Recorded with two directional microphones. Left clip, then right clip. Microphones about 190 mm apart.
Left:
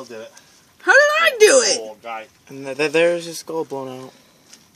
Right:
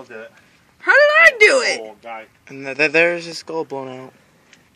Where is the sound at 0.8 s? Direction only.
45° left (ahead or behind).